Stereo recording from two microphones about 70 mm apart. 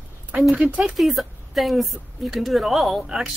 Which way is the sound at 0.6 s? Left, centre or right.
Centre.